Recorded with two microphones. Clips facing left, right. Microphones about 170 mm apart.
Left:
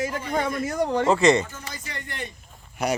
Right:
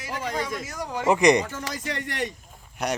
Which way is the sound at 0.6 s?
60° left (ahead or behind).